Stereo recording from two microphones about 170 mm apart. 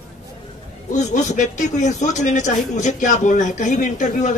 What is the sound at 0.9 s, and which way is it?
A man's voice, 45° left (ahead or behind).